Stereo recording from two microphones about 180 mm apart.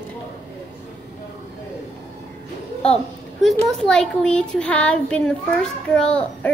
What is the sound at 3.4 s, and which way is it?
A child's voice, centre (ahead or behind).